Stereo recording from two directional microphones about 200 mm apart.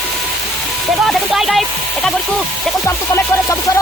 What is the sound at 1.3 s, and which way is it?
Speech, centre (ahead or behind).